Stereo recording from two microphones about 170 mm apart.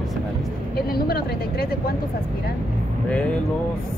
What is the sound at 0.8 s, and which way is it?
Speech, 65° left (ahead or behind).